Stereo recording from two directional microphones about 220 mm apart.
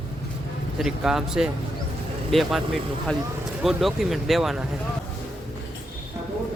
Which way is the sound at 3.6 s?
Centre (ahead or behind).